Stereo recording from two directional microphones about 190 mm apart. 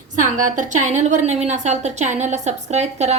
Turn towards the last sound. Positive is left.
turn(degrees=-35)  # may be behind; listen again after turning